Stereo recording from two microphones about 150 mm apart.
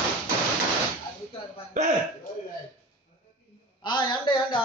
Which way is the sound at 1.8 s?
55° right (ahead or behind).